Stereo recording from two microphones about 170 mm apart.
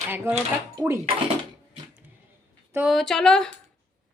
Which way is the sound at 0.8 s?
15° right (ahead or behind).